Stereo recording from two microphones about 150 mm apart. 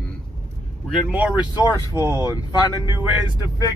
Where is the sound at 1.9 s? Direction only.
20° left (ahead or behind).